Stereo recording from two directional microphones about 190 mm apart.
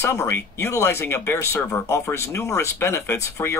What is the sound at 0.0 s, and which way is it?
Speech, 15° left (ahead or behind).